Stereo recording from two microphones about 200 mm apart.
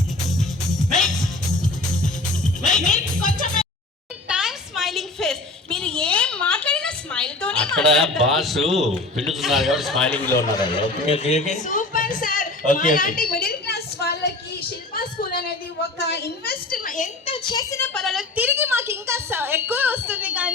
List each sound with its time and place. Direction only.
0.3 s music: centre (ahead or behind)
2.8 s music: 40° left (ahead or behind)
4.3 s a sound: 5° right (ahead or behind)
7.9 s a man's voice: centre (ahead or behind)
10.6 s a woman's voice: 25° left (ahead or behind); by 14.3 s 55° left (ahead or behind)
14.9 s a sound: 50° left (ahead or behind)
16.0 s a woman's voice: 55° left (ahead or behind)
17.2 s a woman's voice: 25° left (ahead or behind); by 20.5 s 5° right (ahead or behind)